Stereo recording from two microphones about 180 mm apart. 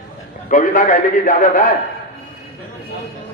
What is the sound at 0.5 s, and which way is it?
A man's voice, 45° left (ahead or behind).